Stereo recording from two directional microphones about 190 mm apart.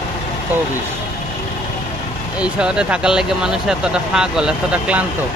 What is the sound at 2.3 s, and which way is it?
Speech, 5° right (ahead or behind).